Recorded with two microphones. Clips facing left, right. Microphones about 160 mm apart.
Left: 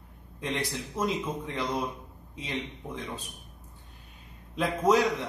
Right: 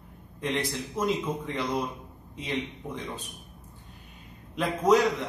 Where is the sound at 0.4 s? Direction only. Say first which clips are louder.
Right 3 dB; centre (ahead or behind).